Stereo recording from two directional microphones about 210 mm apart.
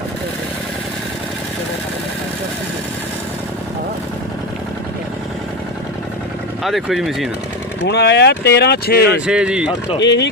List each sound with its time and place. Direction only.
6.7 s speech: centre (ahead or behind)
7.9 s speech: 55° left (ahead or behind)
9.2 s speech: 5° right (ahead or behind)
10.0 s speech: 55° left (ahead or behind)